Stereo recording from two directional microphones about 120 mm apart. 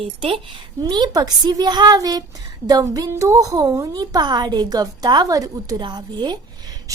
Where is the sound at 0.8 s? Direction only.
35° right (ahead or behind).